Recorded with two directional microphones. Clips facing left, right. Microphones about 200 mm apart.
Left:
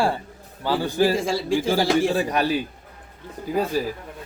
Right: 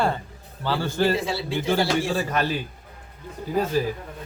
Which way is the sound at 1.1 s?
45° left (ahead or behind).